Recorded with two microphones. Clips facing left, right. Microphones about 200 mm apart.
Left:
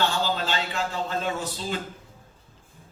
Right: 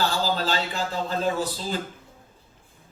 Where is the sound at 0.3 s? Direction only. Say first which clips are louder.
Right 2 dB; 35° right (ahead or behind).